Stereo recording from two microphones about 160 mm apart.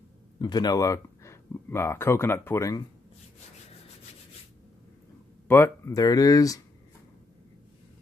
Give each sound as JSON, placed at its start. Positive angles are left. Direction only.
{"t": 0.4, "sound": "speech", "side_deg": 25}
{"t": 5.5, "sound": "speech", "side_deg": 15}